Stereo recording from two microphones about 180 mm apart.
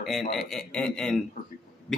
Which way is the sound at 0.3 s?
Centre (ahead or behind).